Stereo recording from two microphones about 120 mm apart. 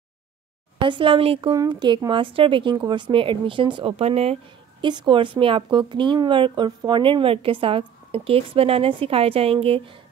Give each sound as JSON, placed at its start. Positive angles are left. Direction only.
{"t": 0.7, "sound": "speech", "side_deg": -45}
{"t": 1.5, "sound": "speech", "side_deg": -35}
{"t": 3.9, "sound": "speech", "side_deg": -60}
{"t": 4.8, "sound": "speech", "side_deg": -40}